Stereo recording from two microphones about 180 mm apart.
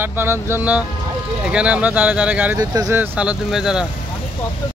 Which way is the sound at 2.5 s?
20° right (ahead or behind).